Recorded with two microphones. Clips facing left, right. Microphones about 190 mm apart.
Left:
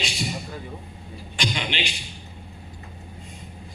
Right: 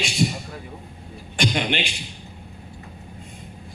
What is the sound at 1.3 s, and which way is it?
Speech, 55° right (ahead or behind).